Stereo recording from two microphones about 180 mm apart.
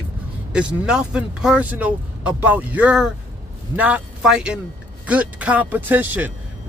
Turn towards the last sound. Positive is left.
turn(degrees=-10)  # may be behind; listen again after turning